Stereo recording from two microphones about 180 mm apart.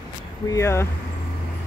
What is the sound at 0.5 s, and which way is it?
Speech, 15° left (ahead or behind).